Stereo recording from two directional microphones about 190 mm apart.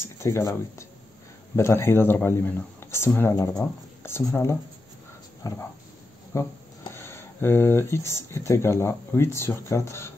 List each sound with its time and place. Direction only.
0.2 s speech: 15° left (ahead or behind)